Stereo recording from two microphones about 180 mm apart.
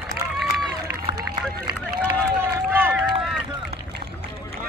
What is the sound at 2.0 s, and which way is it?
Run, 10° right (ahead or behind).